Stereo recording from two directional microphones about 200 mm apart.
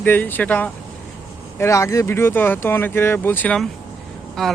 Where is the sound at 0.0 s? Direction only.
10° left (ahead or behind).